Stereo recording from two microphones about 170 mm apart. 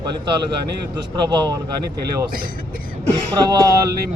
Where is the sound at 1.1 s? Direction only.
25° right (ahead or behind).